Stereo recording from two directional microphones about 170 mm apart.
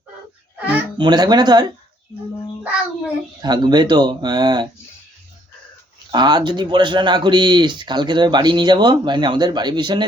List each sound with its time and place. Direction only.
0.6 s music: 10° right (ahead or behind)
0.9 s speech: 25° right (ahead or behind)
3.4 s speech: 25° right (ahead or behind)
6.1 s speech: 25° right (ahead or behind)